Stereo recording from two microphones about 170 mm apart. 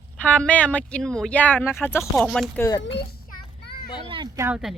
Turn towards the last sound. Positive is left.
turn(degrees=-15)  # may be behind; listen again after turning